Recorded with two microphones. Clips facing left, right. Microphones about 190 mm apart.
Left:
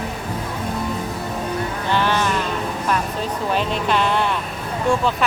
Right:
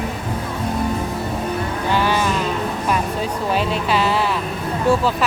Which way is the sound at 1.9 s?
10° right (ahead or behind).